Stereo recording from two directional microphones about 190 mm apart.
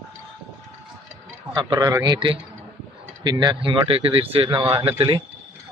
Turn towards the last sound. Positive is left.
turn(degrees=-25)  # may be behind; listen again after turning